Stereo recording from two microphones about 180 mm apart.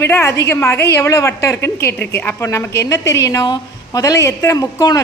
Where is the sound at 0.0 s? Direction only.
15° left (ahead or behind).